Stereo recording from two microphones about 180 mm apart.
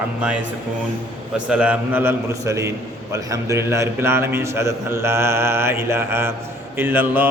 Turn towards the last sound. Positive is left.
turn(degrees=-10)  # may be behind; listen again after turning